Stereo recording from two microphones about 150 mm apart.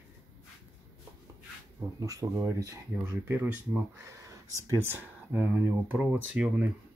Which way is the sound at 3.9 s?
20° right (ahead or behind).